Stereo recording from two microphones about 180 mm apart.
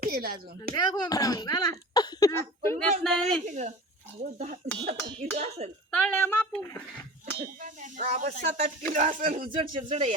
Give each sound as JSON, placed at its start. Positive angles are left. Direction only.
{"t": 0.0, "sound": "speech", "side_deg": -55}
{"t": 0.7, "sound": "speech", "side_deg": 25}
{"t": 2.6, "sound": "a man's voice", "side_deg": 5}
{"t": 3.4, "sound": "speech", "side_deg": -40}
{"t": 5.9, "sound": "speech", "side_deg": 10}
{"t": 7.6, "sound": "speech", "side_deg": -45}
{"t": 9.7, "sound": "speech", "side_deg": -35}